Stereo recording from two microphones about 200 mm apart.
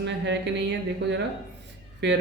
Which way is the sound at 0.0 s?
60° right (ahead or behind).